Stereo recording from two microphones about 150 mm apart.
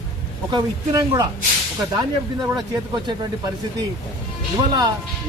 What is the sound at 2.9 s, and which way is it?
Speech, 30° right (ahead or behind).